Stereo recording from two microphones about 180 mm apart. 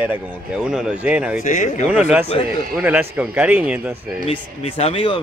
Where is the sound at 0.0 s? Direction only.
5° right (ahead or behind).